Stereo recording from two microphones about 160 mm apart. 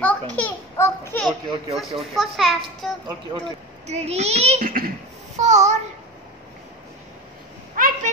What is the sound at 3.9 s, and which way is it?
Speech, 40° right (ahead or behind).